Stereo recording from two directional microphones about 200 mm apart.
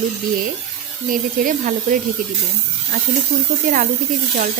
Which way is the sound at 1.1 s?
45° right (ahead or behind).